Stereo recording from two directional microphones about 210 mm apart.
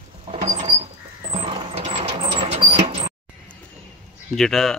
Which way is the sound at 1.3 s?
25° right (ahead or behind).